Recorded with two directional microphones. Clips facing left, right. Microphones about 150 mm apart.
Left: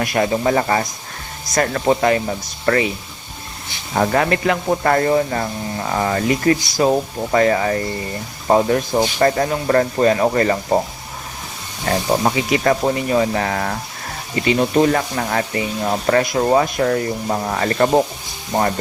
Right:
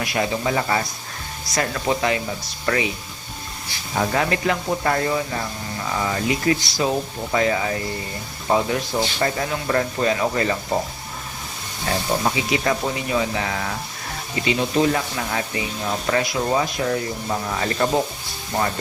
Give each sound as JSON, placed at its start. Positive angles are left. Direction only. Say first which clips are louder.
{"t": 0.0, "sound": "speech", "louder": "left 5 dB", "side_deg": 50}
{"t": 3.9, "sound": "speech", "louder": "left 5 dB", "side_deg": 55}
{"t": 11.9, "sound": "speech", "louder": "left 5 dB", "side_deg": 45}